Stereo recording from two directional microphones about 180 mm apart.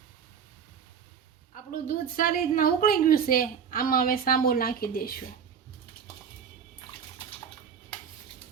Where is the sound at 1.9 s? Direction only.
50° left (ahead or behind).